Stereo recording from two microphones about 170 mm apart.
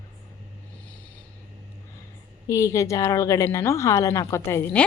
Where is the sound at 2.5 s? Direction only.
20° left (ahead or behind).